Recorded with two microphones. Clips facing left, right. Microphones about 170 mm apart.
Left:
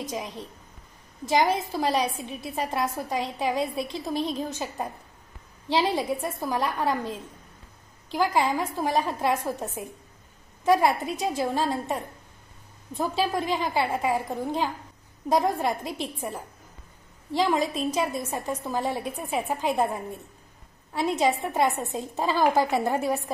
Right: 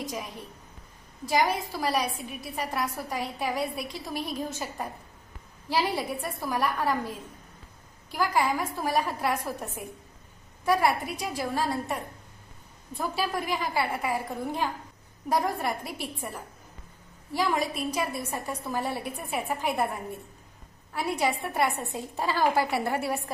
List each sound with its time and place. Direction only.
0.0 s a woman's voice: 20° left (ahead or behind)
21.0 s a woman's voice: 20° left (ahead or behind)